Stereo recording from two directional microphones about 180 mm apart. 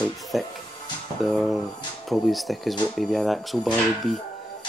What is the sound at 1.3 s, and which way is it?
Speech, centre (ahead or behind).